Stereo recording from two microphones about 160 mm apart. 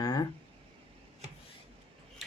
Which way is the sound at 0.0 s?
25° left (ahead or behind).